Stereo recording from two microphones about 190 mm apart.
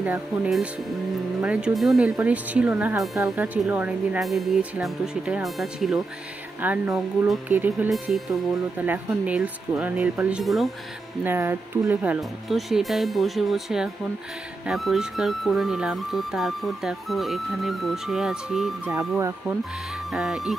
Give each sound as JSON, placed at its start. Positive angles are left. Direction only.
{"t": 1.1, "sound": "speech", "side_deg": -5}
{"t": 11.2, "sound": "speech", "side_deg": -10}
{"t": 18.9, "sound": "speech", "side_deg": -15}
{"t": 20.1, "sound": "speech", "side_deg": 0}